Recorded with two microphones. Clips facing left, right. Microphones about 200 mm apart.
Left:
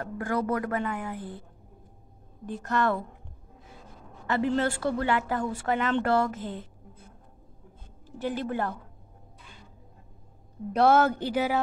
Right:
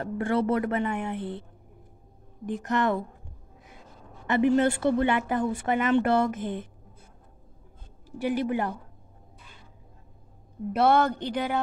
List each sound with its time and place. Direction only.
0.0 s a woman's voice: 25° right (ahead or behind)
2.4 s a woman's voice: 15° right (ahead or behind)
4.3 s a woman's voice: 20° right (ahead or behind)
8.2 s a woman's voice: 15° right (ahead or behind)
10.7 s speech: centre (ahead or behind)